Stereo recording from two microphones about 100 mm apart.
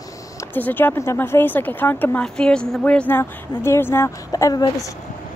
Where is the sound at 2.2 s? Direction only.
5° left (ahead or behind); by 4.1 s 25° left (ahead or behind).